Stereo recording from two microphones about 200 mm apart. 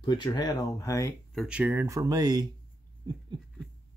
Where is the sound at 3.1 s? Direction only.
20° right (ahead or behind).